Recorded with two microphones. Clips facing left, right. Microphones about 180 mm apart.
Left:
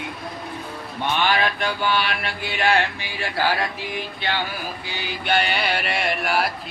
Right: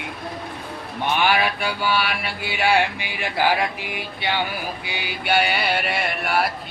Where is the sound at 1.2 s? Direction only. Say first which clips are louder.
Right 1 dB; 10° right (ahead or behind).